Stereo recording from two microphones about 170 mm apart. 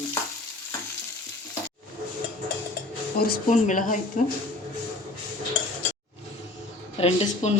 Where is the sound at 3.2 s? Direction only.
55° left (ahead or behind).